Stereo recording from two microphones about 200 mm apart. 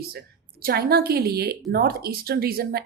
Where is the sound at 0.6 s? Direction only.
50° right (ahead or behind).